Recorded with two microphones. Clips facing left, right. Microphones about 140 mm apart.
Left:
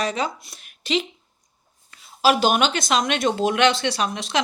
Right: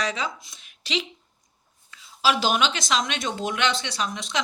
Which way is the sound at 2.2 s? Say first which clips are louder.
Left 4 dB; 55° left (ahead or behind).